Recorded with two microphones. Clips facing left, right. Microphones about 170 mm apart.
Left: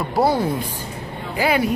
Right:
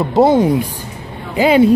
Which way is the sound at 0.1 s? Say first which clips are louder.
Right 8 dB; 20° right (ahead or behind).